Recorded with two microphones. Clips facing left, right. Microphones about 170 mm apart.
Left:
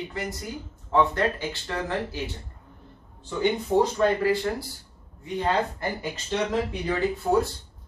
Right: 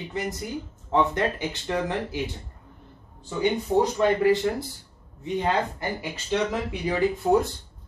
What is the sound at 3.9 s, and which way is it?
Speech, 20° right (ahead or behind).